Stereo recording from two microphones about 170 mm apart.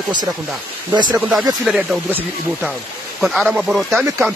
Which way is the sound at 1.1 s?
5° right (ahead or behind).